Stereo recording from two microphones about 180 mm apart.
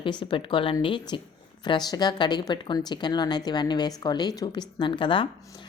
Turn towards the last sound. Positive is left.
turn(degrees=30)  # may be behind; listen again after turning